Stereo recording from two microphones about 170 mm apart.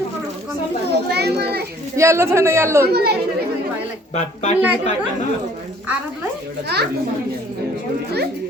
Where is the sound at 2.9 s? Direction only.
70° right (ahead or behind).